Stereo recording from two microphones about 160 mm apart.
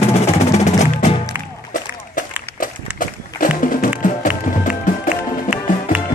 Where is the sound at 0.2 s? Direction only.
45° left (ahead or behind).